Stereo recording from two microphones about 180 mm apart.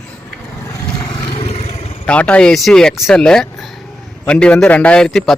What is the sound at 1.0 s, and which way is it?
Vehicle, 30° left (ahead or behind).